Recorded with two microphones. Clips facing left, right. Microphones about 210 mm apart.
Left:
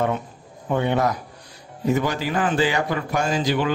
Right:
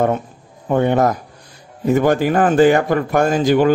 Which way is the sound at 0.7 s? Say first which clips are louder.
Right 6 dB; 45° right (ahead or behind).